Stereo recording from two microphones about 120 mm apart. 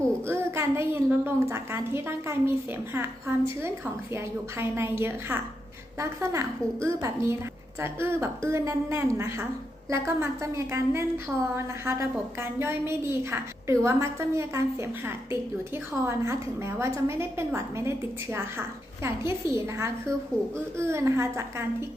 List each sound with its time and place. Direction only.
0.3 s a woman's voice: 20° right (ahead or behind)